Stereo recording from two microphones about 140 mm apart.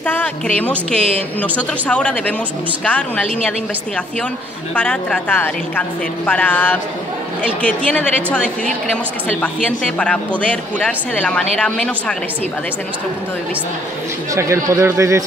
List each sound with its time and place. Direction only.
0.0 s speech: 10° left (ahead or behind)
4.7 s speech: 10° left (ahead or behind)
14.3 s speech: 20° right (ahead or behind)